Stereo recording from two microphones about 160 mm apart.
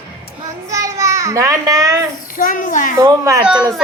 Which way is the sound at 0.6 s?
20° right (ahead or behind).